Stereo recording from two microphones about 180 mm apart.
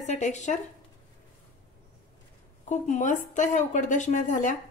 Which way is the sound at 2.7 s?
45° left (ahead or behind).